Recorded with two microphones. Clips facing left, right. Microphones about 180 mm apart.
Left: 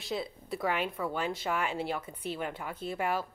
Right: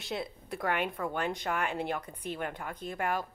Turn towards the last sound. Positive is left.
turn(degrees=5)  # may be behind; listen again after turning